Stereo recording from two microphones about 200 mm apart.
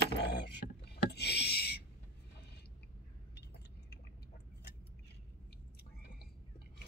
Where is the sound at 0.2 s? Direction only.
55° left (ahead or behind).